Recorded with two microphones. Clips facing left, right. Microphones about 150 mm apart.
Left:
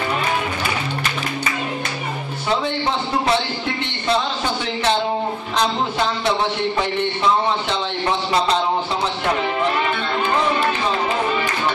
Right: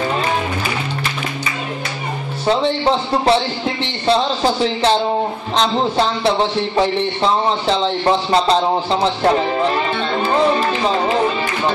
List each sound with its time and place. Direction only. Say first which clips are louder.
2.6 s speech: right 5 dB; 30° right (ahead or behind)
7.6 s speech: right 6 dB; 35° right (ahead or behind)